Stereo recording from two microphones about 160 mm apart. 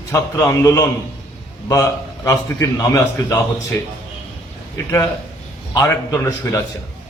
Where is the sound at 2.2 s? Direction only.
20° left (ahead or behind).